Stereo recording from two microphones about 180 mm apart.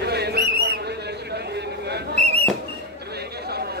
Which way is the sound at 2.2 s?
35° right (ahead or behind).